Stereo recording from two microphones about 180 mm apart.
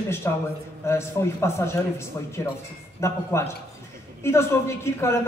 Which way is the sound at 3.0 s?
15° left (ahead or behind).